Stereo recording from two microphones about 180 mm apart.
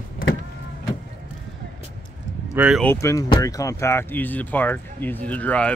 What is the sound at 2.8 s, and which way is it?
Speech, 15° left (ahead or behind).